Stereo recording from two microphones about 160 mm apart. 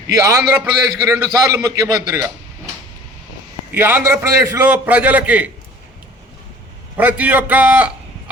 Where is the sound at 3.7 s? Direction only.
15° right (ahead or behind).